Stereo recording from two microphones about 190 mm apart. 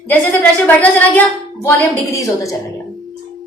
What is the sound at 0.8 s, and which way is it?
A woman's voice, 10° left (ahead or behind).